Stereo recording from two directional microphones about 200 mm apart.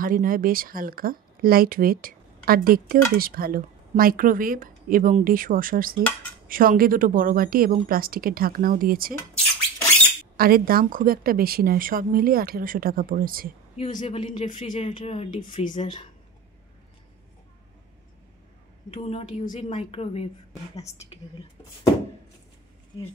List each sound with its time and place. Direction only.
0.0 s speech: 45° right (ahead or behind)
10.3 s speech: 45° right (ahead or behind)
13.7 s a woman's voice: 35° left (ahead or behind)
15.6 s a woman's voice: 40° left (ahead or behind)
18.9 s a woman's voice: 30° left (ahead or behind)